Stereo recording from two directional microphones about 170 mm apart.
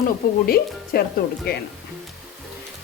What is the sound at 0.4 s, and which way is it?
Speech, 65° left (ahead or behind).